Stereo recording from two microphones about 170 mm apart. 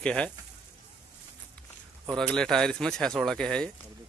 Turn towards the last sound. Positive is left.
turn(degrees=5)  # may be behind; listen again after turning